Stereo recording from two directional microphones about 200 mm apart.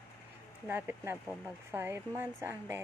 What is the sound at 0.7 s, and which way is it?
Speech, 10° right (ahead or behind).